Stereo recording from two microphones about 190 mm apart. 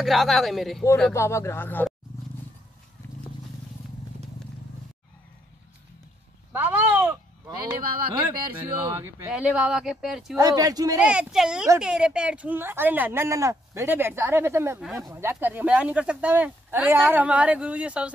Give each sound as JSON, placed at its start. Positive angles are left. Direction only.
{"t": 0.0, "sound": "speech", "side_deg": 0}
{"t": 1.1, "sound": "speech", "side_deg": 15}
{"t": 6.5, "sound": "a sound", "side_deg": -10}
{"t": 8.5, "sound": "speech", "side_deg": -15}
{"t": 9.3, "sound": "speech", "side_deg": -5}
{"t": 10.3, "sound": "speech", "side_deg": -20}
{"t": 11.0, "sound": "speech", "side_deg": -5}